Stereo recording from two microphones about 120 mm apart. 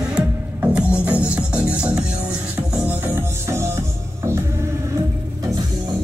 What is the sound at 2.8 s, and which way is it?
Music, 20° right (ahead or behind).